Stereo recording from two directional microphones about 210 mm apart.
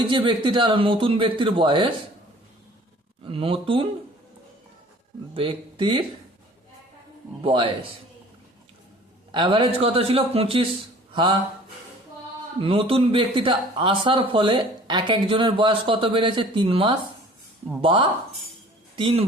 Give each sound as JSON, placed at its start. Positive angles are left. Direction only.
{"t": 0.1, "sound": "speech", "side_deg": -25}
{"t": 3.2, "sound": "speech", "side_deg": -25}
{"t": 5.3, "sound": "speech", "side_deg": -25}
{"t": 7.4, "sound": "speech", "side_deg": -25}
{"t": 9.3, "sound": "speech", "side_deg": -25}
{"t": 12.6, "sound": "speech", "side_deg": -25}